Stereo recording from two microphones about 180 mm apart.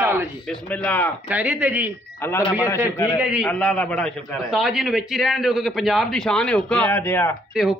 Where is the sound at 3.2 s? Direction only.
5° right (ahead or behind).